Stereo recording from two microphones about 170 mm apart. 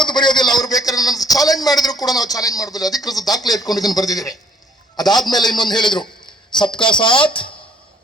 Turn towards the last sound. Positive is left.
turn(degrees=30)  # may be behind; listen again after turning